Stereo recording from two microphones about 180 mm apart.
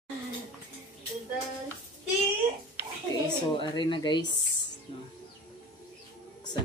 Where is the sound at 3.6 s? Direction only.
25° left (ahead or behind).